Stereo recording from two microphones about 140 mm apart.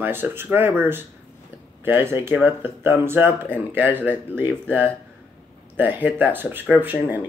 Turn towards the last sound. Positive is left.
turn(degrees=-15)  # may be behind; listen again after turning